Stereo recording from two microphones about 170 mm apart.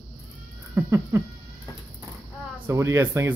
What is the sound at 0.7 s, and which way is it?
Speech, 15° right (ahead or behind).